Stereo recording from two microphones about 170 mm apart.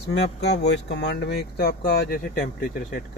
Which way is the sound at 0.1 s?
85° left.